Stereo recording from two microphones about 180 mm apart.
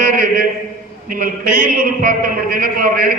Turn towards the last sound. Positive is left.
turn(degrees=-50)  # may be behind; listen again after turning